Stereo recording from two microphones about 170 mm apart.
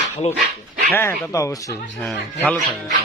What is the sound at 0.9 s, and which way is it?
Speech, 10° left (ahead or behind).